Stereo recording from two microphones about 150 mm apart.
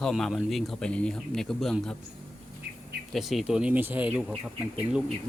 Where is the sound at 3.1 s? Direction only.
Centre (ahead or behind).